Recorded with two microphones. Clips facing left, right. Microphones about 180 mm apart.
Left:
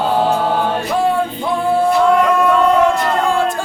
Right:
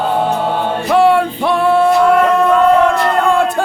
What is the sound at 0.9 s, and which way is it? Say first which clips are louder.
Music: right 8 dB; 75° right (ahead or behind).